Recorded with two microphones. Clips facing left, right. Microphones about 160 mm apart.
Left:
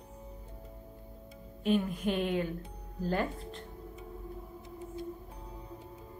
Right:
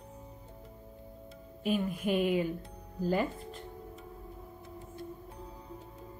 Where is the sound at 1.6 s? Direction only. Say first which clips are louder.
Left 2 dB; 5° right (ahead or behind).